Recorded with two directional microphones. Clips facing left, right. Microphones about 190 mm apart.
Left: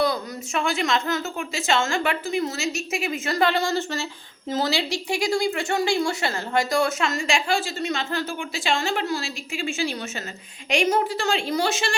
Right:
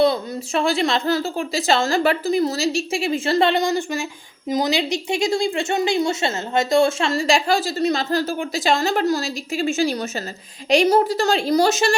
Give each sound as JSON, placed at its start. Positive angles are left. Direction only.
{"t": 0.0, "sound": "speech", "side_deg": -30}